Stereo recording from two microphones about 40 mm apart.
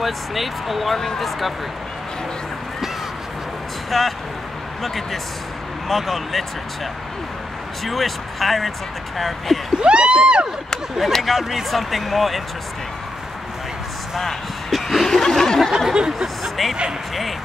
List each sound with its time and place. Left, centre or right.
0.0 s speech: centre
0.9 s speech: centre
3.9 s speech: centre
7.8 s speech: centre
9.8 s a sound: right
11.0 s speech: centre
14.1 s speech: centre
15.0 s a sound: centre
15.9 s a sound: right
16.4 s bow-wow: centre